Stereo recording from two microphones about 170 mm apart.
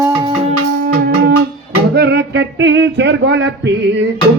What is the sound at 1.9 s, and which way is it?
Music, 75° right (ahead or behind).